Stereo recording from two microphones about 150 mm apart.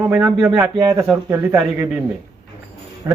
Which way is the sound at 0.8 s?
25° right (ahead or behind).